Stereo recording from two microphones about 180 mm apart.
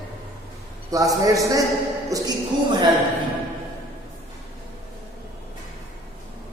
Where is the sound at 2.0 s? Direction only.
20° right (ahead or behind).